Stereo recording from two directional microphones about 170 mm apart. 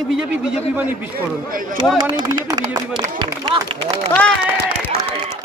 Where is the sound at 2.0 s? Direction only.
30° right (ahead or behind).